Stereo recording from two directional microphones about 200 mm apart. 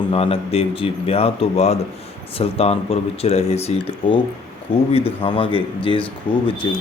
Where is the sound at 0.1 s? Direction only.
30° left (ahead or behind).